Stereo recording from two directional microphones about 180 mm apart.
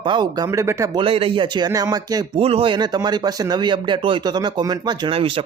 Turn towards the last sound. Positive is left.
turn(degrees=-30)  # may be behind; listen again after turning